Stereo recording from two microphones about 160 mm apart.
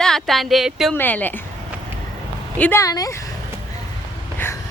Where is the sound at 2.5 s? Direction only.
15° left (ahead or behind).